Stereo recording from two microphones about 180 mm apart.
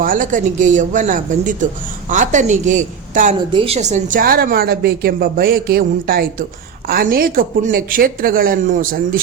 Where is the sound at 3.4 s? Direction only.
30° right (ahead or behind).